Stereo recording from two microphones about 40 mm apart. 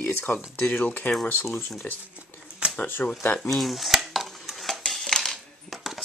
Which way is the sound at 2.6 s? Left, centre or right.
Right.